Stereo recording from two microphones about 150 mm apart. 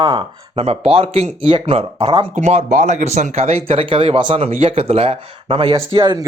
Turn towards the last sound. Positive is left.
turn(degrees=-30)  # may be behind; listen again after turning